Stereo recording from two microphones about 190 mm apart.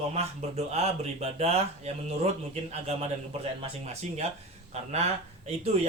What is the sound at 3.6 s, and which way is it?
Speech, 35° right (ahead or behind).